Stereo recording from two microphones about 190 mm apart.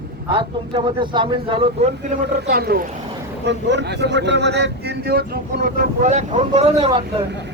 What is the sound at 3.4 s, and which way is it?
Speech, 65° right (ahead or behind).